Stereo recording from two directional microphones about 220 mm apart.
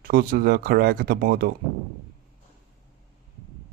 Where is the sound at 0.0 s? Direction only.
45° right (ahead or behind).